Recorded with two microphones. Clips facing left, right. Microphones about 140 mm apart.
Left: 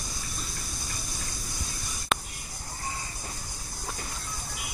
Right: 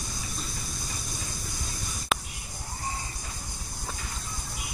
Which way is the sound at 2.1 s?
Centre (ahead or behind).